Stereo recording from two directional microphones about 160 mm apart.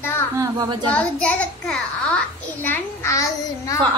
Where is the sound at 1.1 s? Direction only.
5° left (ahead or behind).